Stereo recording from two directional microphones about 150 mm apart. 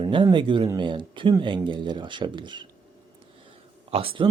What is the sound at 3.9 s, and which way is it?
Speech, 35° right (ahead or behind).